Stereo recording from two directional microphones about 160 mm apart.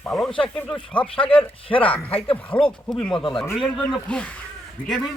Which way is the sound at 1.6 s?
35° left (ahead or behind).